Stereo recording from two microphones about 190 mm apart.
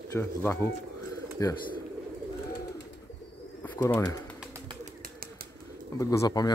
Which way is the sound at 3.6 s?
10° left (ahead or behind).